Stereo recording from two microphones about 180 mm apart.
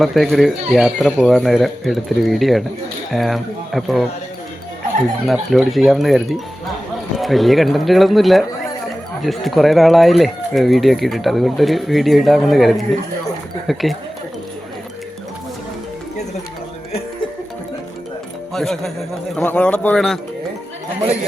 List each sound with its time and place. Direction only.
0.0 s speech: centre (ahead or behind)
5.2 s speech: centre (ahead or behind)
18.5 s speech: centre (ahead or behind)